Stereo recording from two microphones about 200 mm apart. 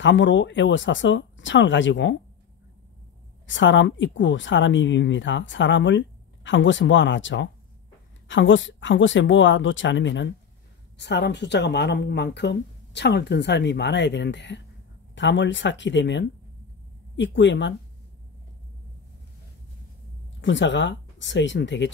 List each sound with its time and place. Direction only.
0.0 s speech: 65° left (ahead or behind)
3.4 s speech: 70° left (ahead or behind)
20.3 s speech: 65° left (ahead or behind)